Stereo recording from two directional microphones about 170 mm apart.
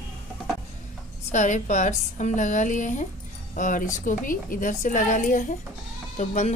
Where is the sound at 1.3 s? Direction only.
45° left (ahead or behind).